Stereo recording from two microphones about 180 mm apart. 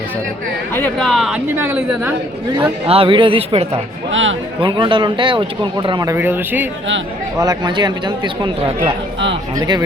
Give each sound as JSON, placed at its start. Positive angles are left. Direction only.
{"t": 0.7, "sound": "a woman's voice", "side_deg": 5}
{"t": 2.6, "sound": "speech", "side_deg": -30}
{"t": 4.1, "sound": "speech", "side_deg": -90}
{"t": 4.6, "sound": "speech", "side_deg": -25}
{"t": 6.1, "sound": "a woman's voice", "side_deg": -10}
{"t": 7.3, "sound": "speech", "side_deg": -20}